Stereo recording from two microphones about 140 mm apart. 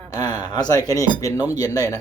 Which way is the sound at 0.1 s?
30° left (ahead or behind).